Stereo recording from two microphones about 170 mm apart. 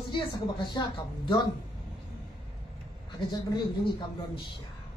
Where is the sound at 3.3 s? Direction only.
30° left (ahead or behind).